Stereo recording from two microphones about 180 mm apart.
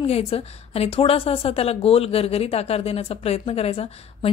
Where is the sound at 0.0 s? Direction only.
35° left (ahead or behind).